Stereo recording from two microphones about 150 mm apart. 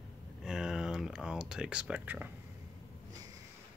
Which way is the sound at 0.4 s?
5° right (ahead or behind).